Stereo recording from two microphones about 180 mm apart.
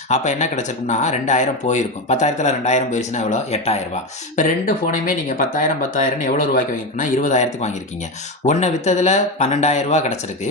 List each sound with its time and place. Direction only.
0.1 s speech: 40° left (ahead or behind)